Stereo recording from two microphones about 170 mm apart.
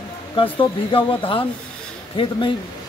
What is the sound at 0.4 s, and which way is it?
Speech, 30° left (ahead or behind).